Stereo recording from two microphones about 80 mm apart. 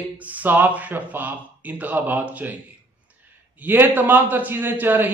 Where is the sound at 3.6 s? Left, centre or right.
Right.